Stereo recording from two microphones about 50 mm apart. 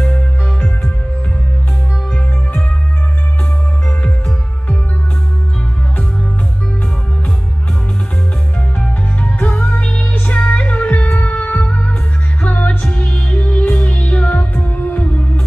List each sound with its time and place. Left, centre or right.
9.2 s music: left
14.5 s music: left